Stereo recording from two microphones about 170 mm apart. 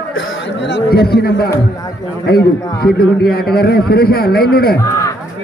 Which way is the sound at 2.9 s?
65° left (ahead or behind).